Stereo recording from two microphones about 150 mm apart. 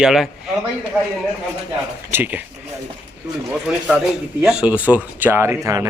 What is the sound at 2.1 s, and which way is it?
Speech, 10° right (ahead or behind).